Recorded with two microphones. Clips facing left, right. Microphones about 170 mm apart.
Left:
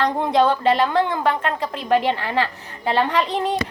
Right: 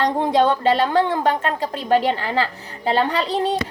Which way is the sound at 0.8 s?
35° right (ahead or behind).